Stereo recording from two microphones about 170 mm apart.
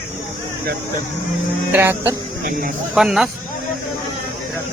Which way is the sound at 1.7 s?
10° right (ahead or behind).